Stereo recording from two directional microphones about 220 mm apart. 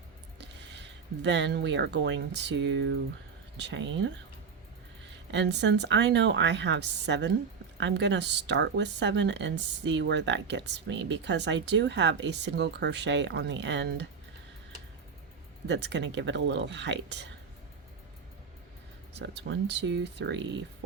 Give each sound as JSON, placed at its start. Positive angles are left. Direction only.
{"t": 0.3, "sound": "speech", "side_deg": -50}
{"t": 5.3, "sound": "a woman's voice", "side_deg": -55}
{"t": 15.6, "sound": "a woman's voice", "side_deg": -50}
{"t": 19.2, "sound": "a woman's voice", "side_deg": -50}